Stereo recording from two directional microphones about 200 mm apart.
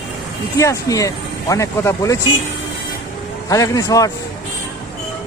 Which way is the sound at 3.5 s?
15° left (ahead or behind).